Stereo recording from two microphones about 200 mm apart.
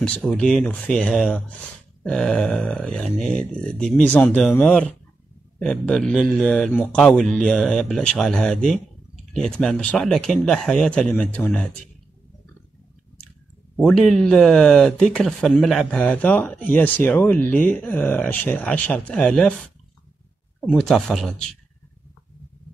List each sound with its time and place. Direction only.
0.0 s speech: 5° left (ahead or behind)
13.7 s speech: centre (ahead or behind)
20.6 s speech: 5° left (ahead or behind)